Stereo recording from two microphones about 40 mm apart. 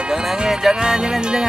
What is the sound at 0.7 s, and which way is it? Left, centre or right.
Speech, centre.